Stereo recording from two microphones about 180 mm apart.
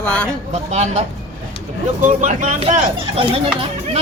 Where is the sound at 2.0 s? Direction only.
45° right (ahead or behind).